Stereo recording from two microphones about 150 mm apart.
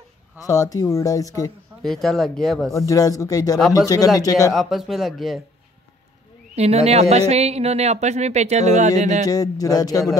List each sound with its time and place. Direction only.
0.4 s speech: 25° left (ahead or behind)
1.8 s speech: centre (ahead or behind)
2.9 s speech: 20° left (ahead or behind)
4.5 s speech: centre (ahead or behind)
6.5 s speech: 45° right (ahead or behind)
9.3 s speech: 25° left (ahead or behind)